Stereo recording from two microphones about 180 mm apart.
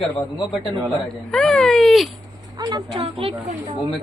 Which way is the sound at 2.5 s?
20° right (ahead or behind).